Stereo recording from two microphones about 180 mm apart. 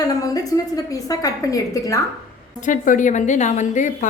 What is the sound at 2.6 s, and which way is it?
A woman's voice, 45° left (ahead or behind).